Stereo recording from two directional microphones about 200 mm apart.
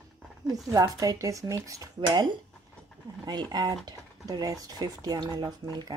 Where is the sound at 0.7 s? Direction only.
15° right (ahead or behind).